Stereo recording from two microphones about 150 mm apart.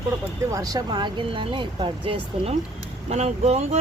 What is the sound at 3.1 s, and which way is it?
Speech, 45° right (ahead or behind).